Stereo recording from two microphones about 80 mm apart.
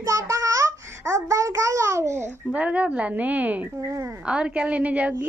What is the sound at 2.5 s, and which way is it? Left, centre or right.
A woman's voice, centre.